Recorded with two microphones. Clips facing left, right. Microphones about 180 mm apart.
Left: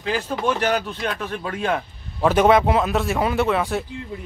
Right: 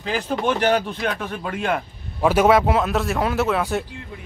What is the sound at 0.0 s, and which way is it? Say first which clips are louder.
Speech: even; 30° right (ahead or behind).